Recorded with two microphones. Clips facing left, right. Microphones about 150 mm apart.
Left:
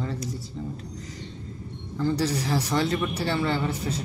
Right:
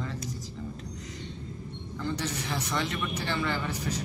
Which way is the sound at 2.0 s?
35° left (ahead or behind).